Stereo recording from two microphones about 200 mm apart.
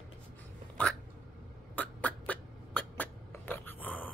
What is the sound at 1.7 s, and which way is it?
Beatboxing, 5° left (ahead or behind).